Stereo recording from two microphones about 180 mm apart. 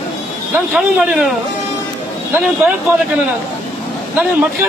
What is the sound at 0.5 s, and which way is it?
Speech, 5° right (ahead or behind).